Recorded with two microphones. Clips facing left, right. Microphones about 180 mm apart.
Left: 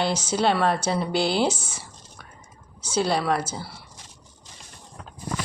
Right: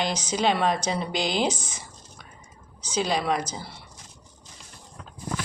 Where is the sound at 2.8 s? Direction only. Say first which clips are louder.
Left 2 dB; 15° right (ahead or behind).